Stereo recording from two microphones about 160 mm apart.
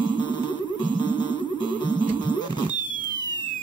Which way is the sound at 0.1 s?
30° left (ahead or behind).